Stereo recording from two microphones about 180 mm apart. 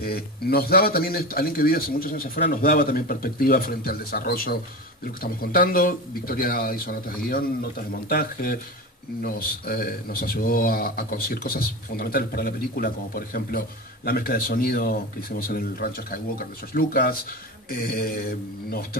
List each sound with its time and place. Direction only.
0.0 s speech: 60° left (ahead or behind)